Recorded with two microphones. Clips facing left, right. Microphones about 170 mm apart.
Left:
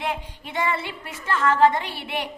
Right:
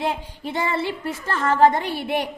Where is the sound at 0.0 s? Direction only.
35° right (ahead or behind).